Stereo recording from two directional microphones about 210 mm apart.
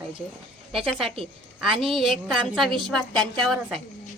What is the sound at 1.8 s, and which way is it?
Speech, centre (ahead or behind).